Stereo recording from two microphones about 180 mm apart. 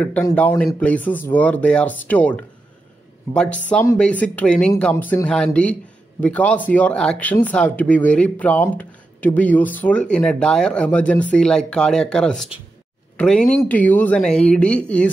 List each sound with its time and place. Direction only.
0.0 s speech: 10° left (ahead or behind)